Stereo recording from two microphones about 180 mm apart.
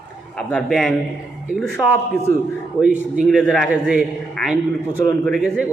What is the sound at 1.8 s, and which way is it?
Speech, 25° left (ahead or behind).